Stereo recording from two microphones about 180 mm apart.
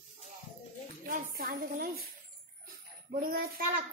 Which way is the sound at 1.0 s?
50° right (ahead or behind).